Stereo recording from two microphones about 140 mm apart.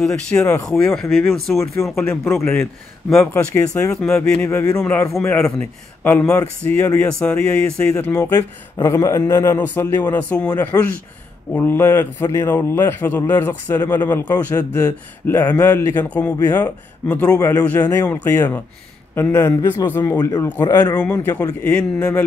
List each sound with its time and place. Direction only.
0.0 s a man's voice: 5° left (ahead or behind)
3.2 s a man's voice: 20° left (ahead or behind)
3.9 s a man's voice: 5° left (ahead or behind)
4.3 s a man's voice: 15° left (ahead or behind)
8.2 s a man's voice: 25° left (ahead or behind)
14.3 s a man's voice: 25° left (ahead or behind)
15.2 s a man's voice: 15° left (ahead or behind)
21.0 s a man's voice: 15° left (ahead or behind)